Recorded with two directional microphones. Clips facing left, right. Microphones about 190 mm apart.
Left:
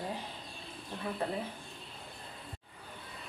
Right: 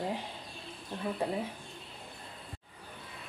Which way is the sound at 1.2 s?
15° right (ahead or behind).